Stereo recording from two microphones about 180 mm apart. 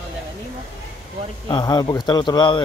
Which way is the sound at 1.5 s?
25° left (ahead or behind).